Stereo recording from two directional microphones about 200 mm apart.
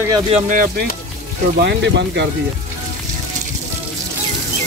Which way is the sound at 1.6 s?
55° right (ahead or behind).